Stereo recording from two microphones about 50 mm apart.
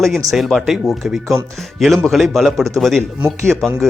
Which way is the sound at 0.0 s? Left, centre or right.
Centre.